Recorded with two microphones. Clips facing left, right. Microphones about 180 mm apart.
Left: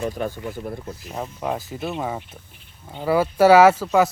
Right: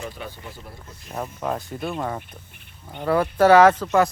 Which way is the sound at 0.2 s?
50° left (ahead or behind).